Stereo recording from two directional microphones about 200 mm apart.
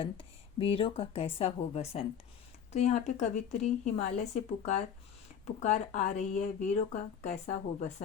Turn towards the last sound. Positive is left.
turn(degrees=35)  # may be behind; listen again after turning